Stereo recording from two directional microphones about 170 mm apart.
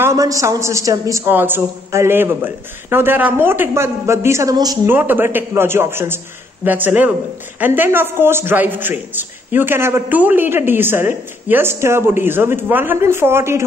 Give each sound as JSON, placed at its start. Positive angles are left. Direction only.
{"t": 0.0, "sound": "a man's voice", "side_deg": -20}
{"t": 4.9, "sound": "a man's voice", "side_deg": -10}